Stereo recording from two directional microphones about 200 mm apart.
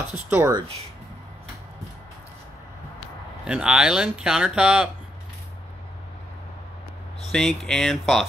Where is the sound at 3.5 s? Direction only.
5° right (ahead or behind).